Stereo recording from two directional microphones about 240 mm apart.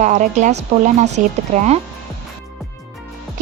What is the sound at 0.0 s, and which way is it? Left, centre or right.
Speech, right.